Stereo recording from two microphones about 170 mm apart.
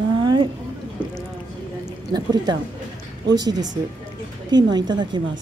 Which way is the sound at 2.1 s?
25° right (ahead or behind).